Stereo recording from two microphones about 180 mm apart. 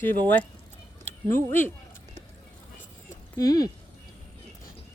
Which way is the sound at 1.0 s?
10° left (ahead or behind).